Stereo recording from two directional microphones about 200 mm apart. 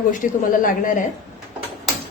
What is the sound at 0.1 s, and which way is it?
Speech, 40° left (ahead or behind).